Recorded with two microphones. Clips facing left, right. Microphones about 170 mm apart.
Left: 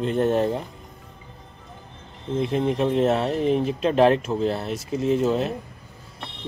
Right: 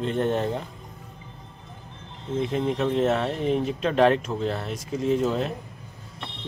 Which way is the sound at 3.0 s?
30° left (ahead or behind).